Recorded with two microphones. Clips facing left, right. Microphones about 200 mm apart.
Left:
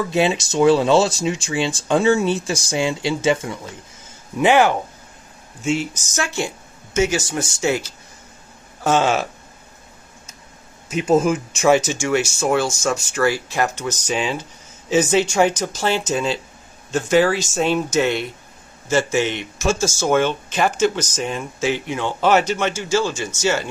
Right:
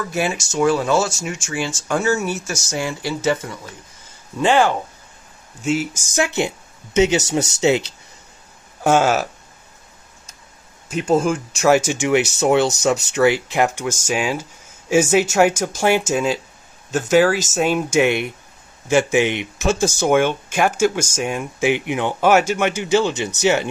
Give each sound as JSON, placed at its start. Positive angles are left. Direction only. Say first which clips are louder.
{"t": 0.1, "sound": "speech", "louder": "left 3 dB", "side_deg": 20}
{"t": 1.3, "sound": "speech", "louder": "left 3 dB", "side_deg": 20}
{"t": 5.6, "sound": "speech", "louder": "right 1 dB", "side_deg": -5}
{"t": 7.3, "sound": "speech", "louder": "right 4 dB", "side_deg": -70}
{"t": 8.8, "sound": "speech", "louder": "right 2 dB", "side_deg": -10}
{"t": 10.9, "sound": "speech", "louder": "left 1 dB", "side_deg": 5}
{"t": 11.9, "sound": "speech", "louder": "right 2 dB", "side_deg": -15}
{"t": 12.2, "sound": "speech", "louder": "right 3 dB", "side_deg": -65}
{"t": 12.4, "sound": "speech", "louder": "right 4 dB", "side_deg": -20}